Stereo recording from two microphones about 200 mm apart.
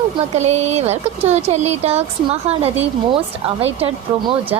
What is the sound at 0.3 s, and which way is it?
Speech, 35° right (ahead or behind).